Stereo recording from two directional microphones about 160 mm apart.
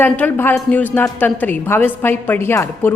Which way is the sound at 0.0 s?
10° left (ahead or behind).